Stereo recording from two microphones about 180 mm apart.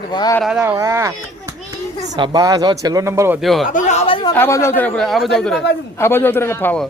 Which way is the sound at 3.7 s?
40° left (ahead or behind).